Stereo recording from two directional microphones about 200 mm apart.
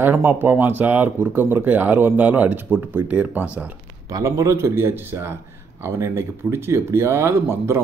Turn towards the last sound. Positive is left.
turn(degrees=-10)  # may be behind; listen again after turning